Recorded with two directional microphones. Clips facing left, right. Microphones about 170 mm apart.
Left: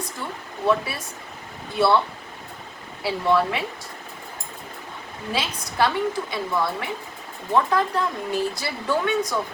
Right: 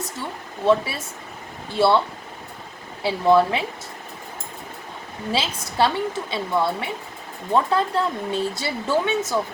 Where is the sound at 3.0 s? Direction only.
25° right (ahead or behind).